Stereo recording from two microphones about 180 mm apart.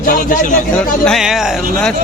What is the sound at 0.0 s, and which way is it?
Speech, 50° left (ahead or behind).